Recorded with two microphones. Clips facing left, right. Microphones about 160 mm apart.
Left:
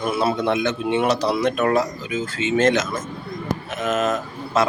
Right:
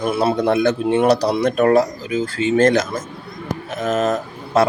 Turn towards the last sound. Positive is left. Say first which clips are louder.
# right 4 dB
turn(degrees=-35)  # may be behind; listen again after turning